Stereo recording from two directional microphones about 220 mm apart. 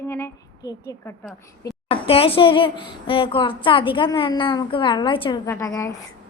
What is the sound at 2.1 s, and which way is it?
A woman's voice, 25° left (ahead or behind).